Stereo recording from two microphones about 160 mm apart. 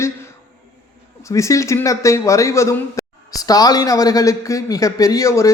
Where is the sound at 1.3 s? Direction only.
20° left (ahead or behind).